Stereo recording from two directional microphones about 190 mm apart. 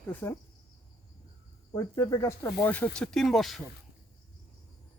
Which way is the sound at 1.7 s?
15° left (ahead or behind).